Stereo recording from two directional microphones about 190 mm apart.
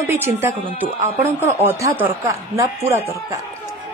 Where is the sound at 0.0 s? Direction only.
15° right (ahead or behind).